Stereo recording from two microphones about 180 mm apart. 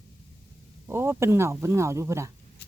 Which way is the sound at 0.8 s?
15° right (ahead or behind).